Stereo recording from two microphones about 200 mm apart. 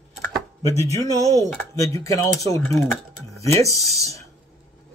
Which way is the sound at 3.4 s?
15° left (ahead or behind).